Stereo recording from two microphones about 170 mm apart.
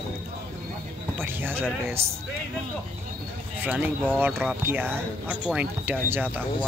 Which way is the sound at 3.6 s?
10° right (ahead or behind).